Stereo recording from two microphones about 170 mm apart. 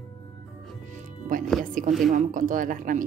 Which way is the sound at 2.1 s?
50° right (ahead or behind).